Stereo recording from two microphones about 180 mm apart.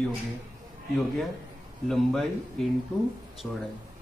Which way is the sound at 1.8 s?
Centre (ahead or behind).